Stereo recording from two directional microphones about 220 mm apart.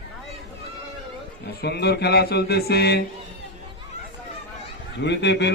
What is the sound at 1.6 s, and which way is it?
A man's voice, 50° left (ahead or behind).